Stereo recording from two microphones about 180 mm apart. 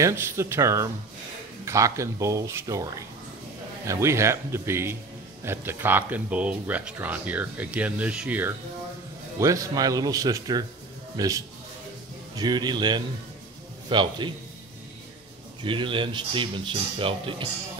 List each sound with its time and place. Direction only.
0.0 s speech: 15° right (ahead or behind)
15.6 s speech: 30° right (ahead or behind)